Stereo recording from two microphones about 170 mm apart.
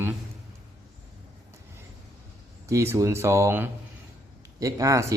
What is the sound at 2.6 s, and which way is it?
Speech, 15° right (ahead or behind).